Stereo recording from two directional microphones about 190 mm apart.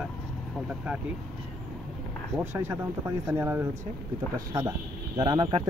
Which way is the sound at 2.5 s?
10° right (ahead or behind).